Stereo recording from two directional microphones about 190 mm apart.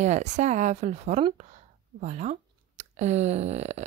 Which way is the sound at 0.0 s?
40° right (ahead or behind).